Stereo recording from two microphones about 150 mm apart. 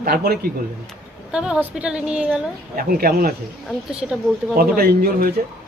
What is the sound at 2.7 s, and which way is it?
Speech, 80° right.